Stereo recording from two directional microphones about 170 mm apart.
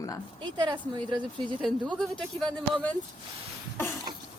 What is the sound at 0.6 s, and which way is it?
Speech, 25° right (ahead or behind).